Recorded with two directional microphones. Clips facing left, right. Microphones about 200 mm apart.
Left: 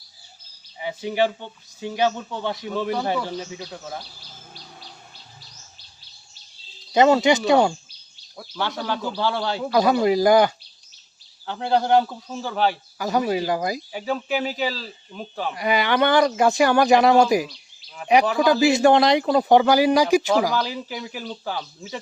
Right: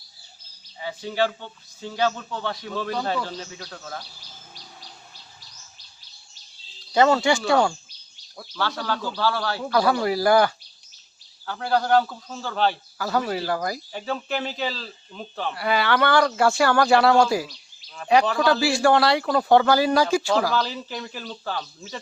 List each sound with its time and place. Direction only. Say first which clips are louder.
0.8 s speech: left 2 dB; 15° left (ahead or behind)
6.9 s speech: left 3 dB; 20° left (ahead or behind)
17.5 s a sound: left 1 dB; 5° left (ahead or behind)
18.1 s speech: left 2 dB; 15° left (ahead or behind)